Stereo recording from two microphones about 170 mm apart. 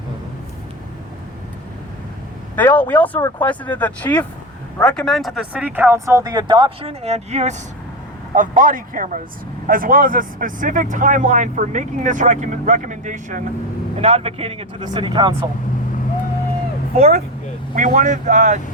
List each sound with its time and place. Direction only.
2.6 s speech: 10° left (ahead or behind)
3.2 s speech: 25° left (ahead or behind)
3.4 s speech: 10° left (ahead or behind); by 7.5 s 40° right (ahead or behind)
8.4 s speech: 50° right (ahead or behind)
13.9 s speech: 35° right (ahead or behind)
17.0 s speech: 40° right (ahead or behind)